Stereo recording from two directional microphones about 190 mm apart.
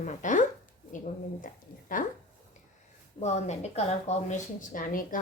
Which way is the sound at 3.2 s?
35° left (ahead or behind).